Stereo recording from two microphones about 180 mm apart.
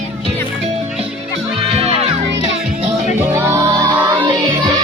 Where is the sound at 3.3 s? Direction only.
10° right (ahead or behind).